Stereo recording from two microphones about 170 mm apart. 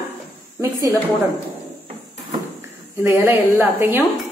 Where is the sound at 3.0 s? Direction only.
15° right (ahead or behind).